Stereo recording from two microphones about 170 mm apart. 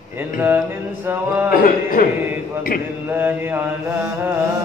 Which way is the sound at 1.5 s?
55° left (ahead or behind).